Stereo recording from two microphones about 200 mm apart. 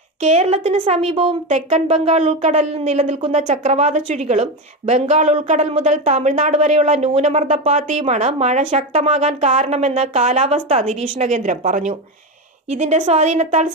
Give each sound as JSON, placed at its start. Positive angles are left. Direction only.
{"t": 0.2, "sound": "a woman's voice", "side_deg": -30}